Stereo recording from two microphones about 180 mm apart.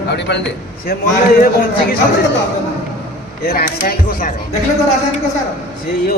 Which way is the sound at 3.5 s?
55° left (ahead or behind).